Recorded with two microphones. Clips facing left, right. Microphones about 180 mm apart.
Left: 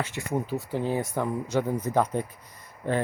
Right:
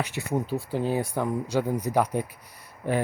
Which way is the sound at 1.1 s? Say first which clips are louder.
Right 1 dB; 10° right (ahead or behind).